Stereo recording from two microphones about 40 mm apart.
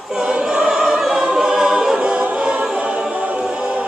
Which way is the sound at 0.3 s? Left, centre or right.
Right.